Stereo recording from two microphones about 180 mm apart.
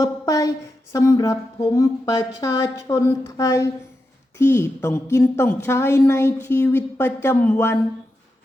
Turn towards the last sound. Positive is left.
turn(degrees=10)  # may be behind; listen again after turning